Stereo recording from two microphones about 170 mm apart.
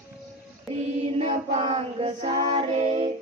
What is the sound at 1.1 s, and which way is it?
Child singing, 35° right (ahead or behind).